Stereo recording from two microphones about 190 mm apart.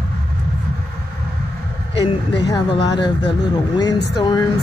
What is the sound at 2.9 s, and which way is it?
Speech, 25° left (ahead or behind).